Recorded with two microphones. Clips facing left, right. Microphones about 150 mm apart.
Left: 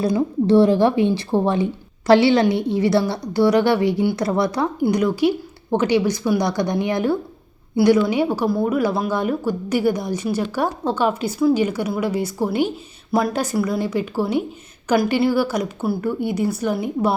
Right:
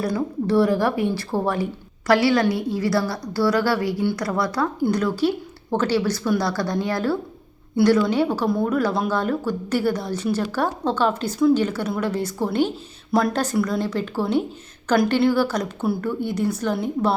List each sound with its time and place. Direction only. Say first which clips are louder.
0.0 s a woman's voice: left 4 dB; 25° left (ahead or behind)